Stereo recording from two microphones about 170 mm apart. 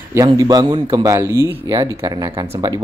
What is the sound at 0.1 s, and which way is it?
A man's voice, 20° right (ahead or behind).